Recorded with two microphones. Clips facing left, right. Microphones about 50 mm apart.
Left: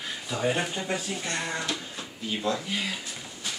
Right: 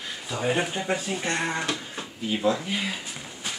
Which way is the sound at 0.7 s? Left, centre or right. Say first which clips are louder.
Right 3 dB; right.